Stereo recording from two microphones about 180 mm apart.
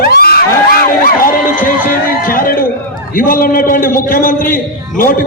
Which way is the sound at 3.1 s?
50° left (ahead or behind).